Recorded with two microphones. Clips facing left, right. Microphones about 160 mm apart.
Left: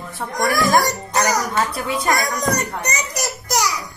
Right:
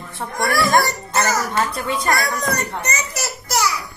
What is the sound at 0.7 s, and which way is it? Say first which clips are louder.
A child's voice: left 1 dB; 15° left (ahead or behind).